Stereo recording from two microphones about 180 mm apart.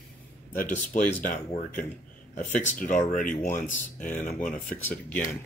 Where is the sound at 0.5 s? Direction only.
45° left (ahead or behind).